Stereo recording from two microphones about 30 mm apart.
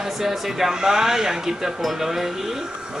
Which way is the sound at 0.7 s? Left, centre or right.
Right.